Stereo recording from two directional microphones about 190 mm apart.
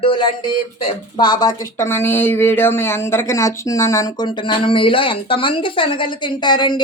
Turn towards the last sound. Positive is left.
turn(degrees=25)  # may be behind; listen again after turning